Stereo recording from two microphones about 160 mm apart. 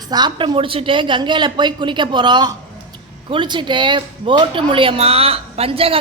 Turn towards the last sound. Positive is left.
turn(degrees=-35)  # may be behind; listen again after turning